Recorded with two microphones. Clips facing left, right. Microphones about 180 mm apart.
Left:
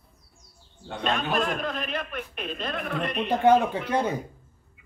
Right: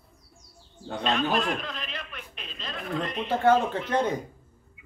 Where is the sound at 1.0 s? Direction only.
50° left (ahead or behind); by 3.3 s 65° left (ahead or behind).